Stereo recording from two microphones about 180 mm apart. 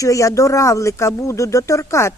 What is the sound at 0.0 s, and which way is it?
Speech, 20° left (ahead or behind).